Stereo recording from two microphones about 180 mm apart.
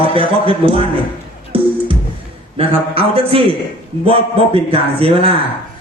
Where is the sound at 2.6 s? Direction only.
30° right (ahead or behind).